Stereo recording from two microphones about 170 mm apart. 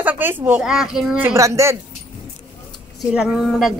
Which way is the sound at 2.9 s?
Centre (ahead or behind).